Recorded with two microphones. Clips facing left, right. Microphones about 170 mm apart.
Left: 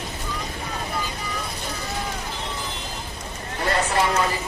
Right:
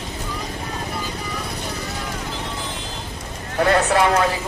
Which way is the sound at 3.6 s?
70° right (ahead or behind).